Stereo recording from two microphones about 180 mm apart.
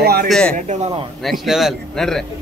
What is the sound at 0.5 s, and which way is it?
Speech, 40° right (ahead or behind).